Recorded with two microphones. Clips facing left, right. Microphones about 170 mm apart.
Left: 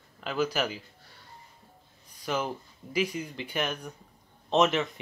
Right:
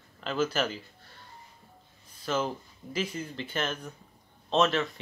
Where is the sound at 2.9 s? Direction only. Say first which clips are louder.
Left 3 dB; 15° left (ahead or behind).